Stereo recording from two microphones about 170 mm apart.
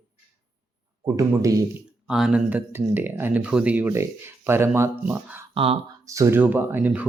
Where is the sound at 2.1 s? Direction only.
5° right (ahead or behind).